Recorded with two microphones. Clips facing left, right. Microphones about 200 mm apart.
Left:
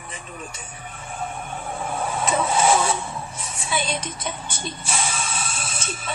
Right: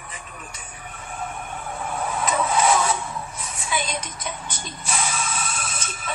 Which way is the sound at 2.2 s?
30° left (ahead or behind).